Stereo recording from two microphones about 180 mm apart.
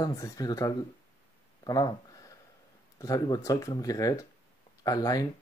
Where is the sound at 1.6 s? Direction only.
20° left (ahead or behind).